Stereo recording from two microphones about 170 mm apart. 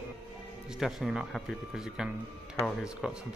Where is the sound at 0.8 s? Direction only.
Centre (ahead or behind).